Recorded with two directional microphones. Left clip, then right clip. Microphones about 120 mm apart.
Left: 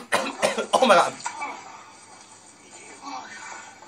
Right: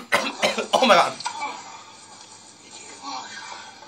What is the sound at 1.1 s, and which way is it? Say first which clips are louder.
Music: right 2 dB; 5° left (ahead or behind).